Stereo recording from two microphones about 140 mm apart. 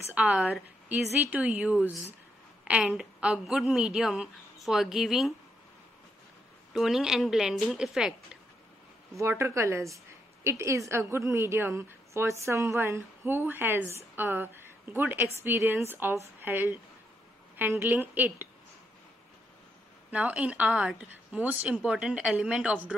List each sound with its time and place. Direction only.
0.1 s a woman's voice: 5° right (ahead or behind)
6.7 s a woman's voice: centre (ahead or behind)
9.1 s a woman's voice: 20° right (ahead or behind)
20.1 s a woman's voice: 10° right (ahead or behind)